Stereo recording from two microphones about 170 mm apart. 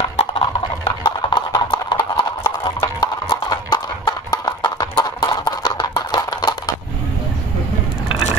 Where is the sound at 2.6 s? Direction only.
25° left (ahead or behind).